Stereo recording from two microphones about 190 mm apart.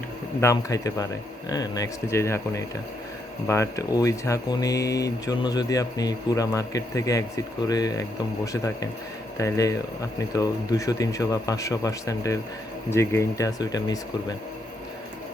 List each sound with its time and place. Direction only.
0.4 s speech: 20° left (ahead or behind)
9.4 s speech: 15° left (ahead or behind)